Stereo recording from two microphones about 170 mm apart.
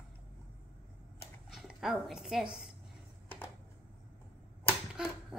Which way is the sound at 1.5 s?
Centre (ahead or behind).